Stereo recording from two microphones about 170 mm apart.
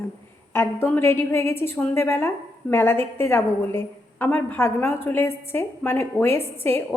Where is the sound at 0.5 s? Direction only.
15° left (ahead or behind).